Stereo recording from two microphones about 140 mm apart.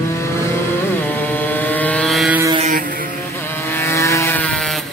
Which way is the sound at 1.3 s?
15° left (ahead or behind).